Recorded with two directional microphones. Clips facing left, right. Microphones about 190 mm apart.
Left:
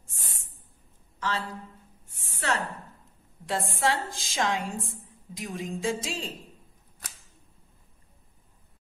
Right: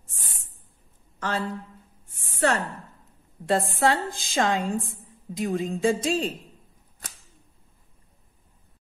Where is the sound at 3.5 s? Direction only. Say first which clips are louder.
Right 5 dB; 55° right (ahead or behind).